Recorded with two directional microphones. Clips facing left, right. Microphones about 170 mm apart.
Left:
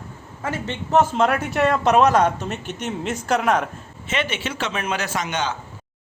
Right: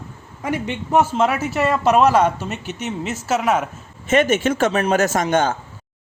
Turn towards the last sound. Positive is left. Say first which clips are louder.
# right 7 dB
turn(degrees=-50)  # may be behind; listen again after turning